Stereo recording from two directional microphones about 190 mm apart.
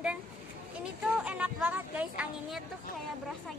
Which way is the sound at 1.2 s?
5° right (ahead or behind).